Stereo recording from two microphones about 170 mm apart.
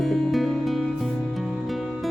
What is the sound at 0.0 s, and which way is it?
Music, centre (ahead or behind).